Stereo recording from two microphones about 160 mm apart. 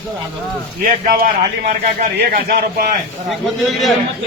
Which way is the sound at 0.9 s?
60° right (ahead or behind).